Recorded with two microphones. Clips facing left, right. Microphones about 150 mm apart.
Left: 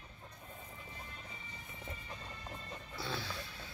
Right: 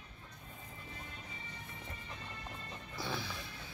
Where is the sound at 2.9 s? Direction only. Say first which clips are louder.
Right 1 dB; 15° right (ahead or behind).